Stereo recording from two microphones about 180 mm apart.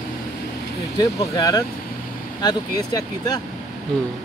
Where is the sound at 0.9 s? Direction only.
20° left (ahead or behind).